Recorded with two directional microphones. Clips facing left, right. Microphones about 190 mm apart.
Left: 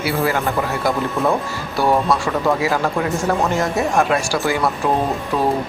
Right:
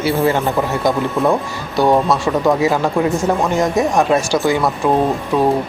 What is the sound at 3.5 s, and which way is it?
Speech, 15° right (ahead or behind).